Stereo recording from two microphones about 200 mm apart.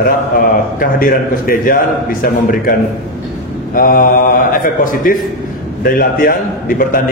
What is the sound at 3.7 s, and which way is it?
Speech, 45° left (ahead or behind).